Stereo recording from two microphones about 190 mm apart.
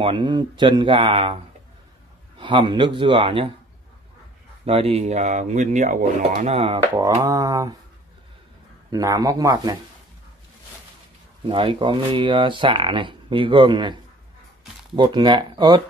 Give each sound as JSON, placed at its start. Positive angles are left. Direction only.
{"t": 0.0, "sound": "speech", "side_deg": -25}
{"t": 4.6, "sound": "speech", "side_deg": -30}
{"t": 7.2, "sound": "speech", "side_deg": -20}
{"t": 8.9, "sound": "speech", "side_deg": -20}
{"t": 11.4, "sound": "speech", "side_deg": -25}
{"t": 15.0, "sound": "speech", "side_deg": -25}